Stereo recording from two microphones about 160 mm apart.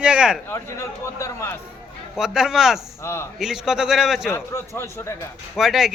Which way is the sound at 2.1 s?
5° right (ahead or behind).